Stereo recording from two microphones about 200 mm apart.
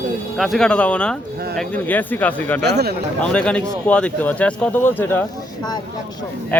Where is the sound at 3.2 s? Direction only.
5° left (ahead or behind).